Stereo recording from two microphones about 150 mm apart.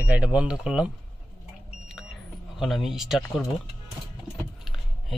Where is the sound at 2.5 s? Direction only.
Centre (ahead or behind).